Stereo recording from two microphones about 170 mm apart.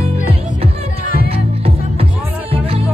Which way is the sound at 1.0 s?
60° left (ahead or behind).